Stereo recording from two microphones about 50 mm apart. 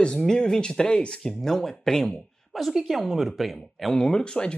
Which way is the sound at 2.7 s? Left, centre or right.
Centre.